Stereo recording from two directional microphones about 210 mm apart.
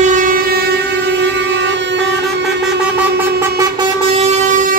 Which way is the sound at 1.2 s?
55° right (ahead or behind).